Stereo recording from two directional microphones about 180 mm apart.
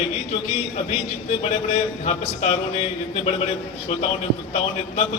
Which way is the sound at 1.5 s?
35° left (ahead or behind).